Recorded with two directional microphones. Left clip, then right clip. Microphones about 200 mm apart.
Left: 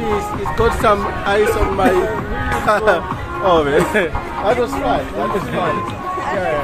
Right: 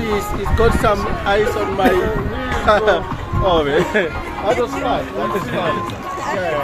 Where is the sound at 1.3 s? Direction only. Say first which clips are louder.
Left 1 dB; 5° left (ahead or behind).